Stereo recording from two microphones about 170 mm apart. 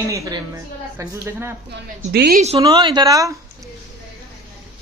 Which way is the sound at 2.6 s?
25° right (ahead or behind).